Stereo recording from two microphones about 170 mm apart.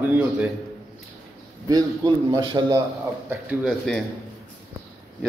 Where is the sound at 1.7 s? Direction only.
25° right (ahead or behind).